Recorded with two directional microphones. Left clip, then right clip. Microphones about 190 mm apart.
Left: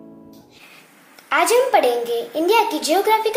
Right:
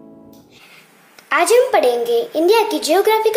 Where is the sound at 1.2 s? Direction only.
25° right (ahead or behind).